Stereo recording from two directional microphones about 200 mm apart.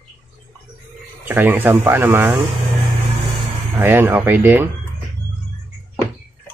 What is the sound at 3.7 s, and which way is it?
Speech, 10° right (ahead or behind).